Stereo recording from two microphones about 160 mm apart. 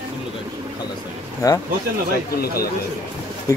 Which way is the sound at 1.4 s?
20° left (ahead or behind).